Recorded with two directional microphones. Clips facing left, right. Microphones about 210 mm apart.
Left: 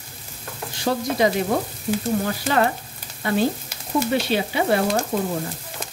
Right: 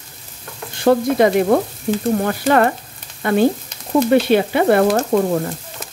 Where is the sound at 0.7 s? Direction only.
55° right (ahead or behind).